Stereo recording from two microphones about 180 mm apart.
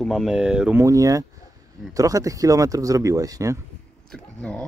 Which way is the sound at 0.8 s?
20° right (ahead or behind).